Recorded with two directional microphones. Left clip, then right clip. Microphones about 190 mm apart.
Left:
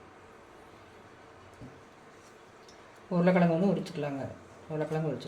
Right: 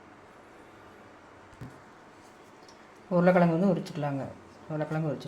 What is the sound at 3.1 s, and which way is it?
Speech, 20° right (ahead or behind).